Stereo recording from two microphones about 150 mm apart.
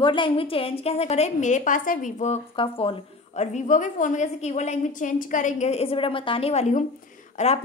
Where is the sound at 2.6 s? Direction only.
40° left (ahead or behind).